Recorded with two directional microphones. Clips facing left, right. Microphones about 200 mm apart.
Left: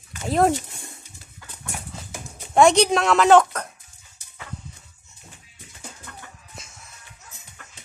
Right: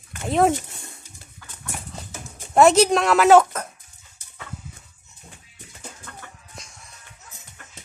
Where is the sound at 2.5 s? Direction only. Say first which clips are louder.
Right 1 dB; 5° right (ahead or behind).